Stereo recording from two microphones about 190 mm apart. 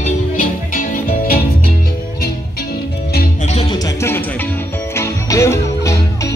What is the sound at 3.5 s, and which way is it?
Music, 30° left (ahead or behind).